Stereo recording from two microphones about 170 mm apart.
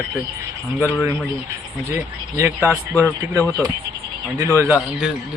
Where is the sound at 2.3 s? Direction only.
15° right (ahead or behind).